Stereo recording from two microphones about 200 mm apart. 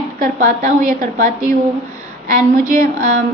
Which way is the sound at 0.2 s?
40° right (ahead or behind).